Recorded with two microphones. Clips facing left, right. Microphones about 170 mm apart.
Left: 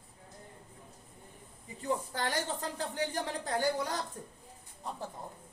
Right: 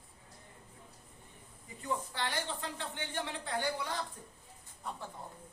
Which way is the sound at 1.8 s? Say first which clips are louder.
Left 3 dB; 40° left (ahead or behind).